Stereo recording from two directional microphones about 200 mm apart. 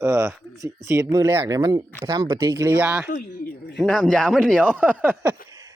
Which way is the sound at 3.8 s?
Centre (ahead or behind).